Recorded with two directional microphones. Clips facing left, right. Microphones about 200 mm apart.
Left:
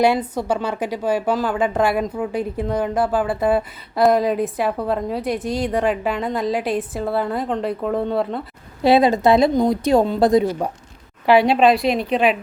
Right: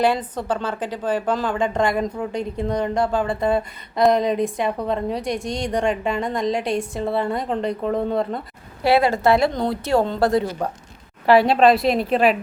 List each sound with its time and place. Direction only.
0.0 s a woman's voice: 10° left (ahead or behind)
8.8 s a woman's voice: 20° left (ahead or behind)
11.3 s a woman's voice: centre (ahead or behind)